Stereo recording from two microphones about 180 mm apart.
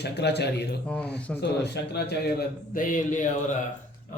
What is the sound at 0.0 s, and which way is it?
Speech, 70° left (ahead or behind).